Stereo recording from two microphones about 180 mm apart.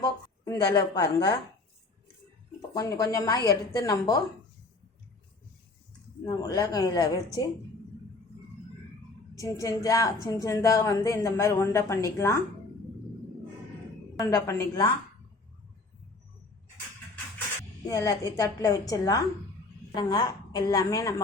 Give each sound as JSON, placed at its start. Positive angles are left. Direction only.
{"t": 0.0, "sound": "a woman's voice", "side_deg": 20}
{"t": 2.6, "sound": "speech", "side_deg": 20}
{"t": 6.2, "sound": "speech", "side_deg": 20}
{"t": 9.3, "sound": "speech", "side_deg": 20}
{"t": 14.2, "sound": "speech", "side_deg": 15}
{"t": 17.8, "sound": "speech", "side_deg": 20}